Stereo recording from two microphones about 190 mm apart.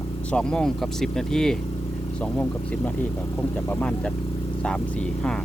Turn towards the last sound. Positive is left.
turn(degrees=5)  # may be behind; listen again after turning